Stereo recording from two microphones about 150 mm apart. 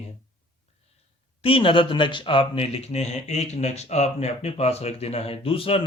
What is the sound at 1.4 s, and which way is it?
Speech, 35° left (ahead or behind).